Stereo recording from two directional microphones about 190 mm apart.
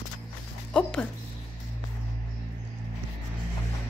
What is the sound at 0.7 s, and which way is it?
Speech, 5° left (ahead or behind).